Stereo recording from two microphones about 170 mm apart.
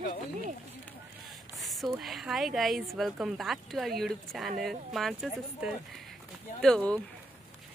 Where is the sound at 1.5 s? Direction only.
Centre (ahead or behind).